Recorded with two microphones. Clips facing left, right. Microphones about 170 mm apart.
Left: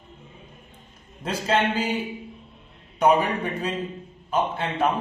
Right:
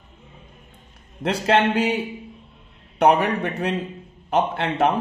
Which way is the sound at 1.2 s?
70° right (ahead or behind).